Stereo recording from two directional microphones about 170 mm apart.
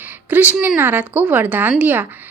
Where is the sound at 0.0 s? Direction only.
10° right (ahead or behind).